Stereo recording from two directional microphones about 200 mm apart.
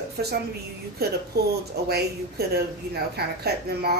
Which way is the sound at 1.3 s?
55° right (ahead or behind).